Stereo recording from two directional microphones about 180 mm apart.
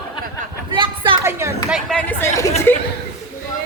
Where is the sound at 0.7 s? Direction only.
25° right (ahead or behind).